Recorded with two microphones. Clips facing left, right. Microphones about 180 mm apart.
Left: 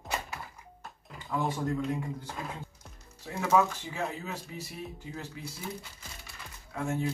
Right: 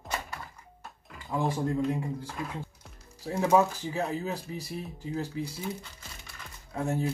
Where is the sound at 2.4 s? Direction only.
25° left (ahead or behind).